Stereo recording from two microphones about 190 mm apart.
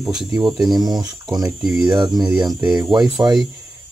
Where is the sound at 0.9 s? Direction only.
20° right (ahead or behind).